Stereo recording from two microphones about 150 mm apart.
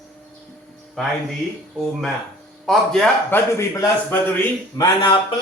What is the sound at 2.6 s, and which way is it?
Speech, centre (ahead or behind).